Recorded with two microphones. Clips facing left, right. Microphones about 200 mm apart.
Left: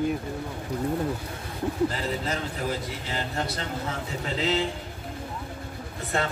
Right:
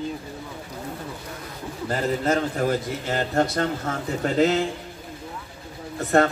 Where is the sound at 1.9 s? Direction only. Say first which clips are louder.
Right 7 dB; 50° right (ahead or behind).